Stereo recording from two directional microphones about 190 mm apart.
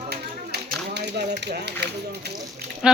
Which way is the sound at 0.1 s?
60° right (ahead or behind).